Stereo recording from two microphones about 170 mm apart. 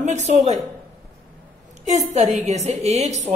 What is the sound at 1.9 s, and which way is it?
A woman's voice, 40° right (ahead or behind).